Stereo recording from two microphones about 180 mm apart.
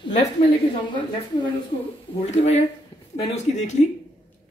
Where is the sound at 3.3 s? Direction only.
40° left (ahead or behind).